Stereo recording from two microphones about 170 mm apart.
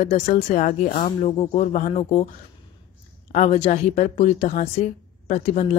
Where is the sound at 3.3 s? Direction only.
40° left (ahead or behind).